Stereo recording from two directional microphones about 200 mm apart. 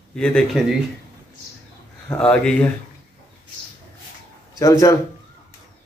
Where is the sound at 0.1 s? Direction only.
5° left (ahead or behind).